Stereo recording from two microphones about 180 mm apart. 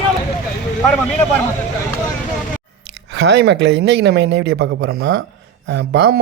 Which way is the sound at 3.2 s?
75° right (ahead or behind).